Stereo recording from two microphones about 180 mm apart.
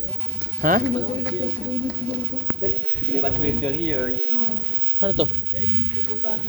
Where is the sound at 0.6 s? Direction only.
50° right (ahead or behind).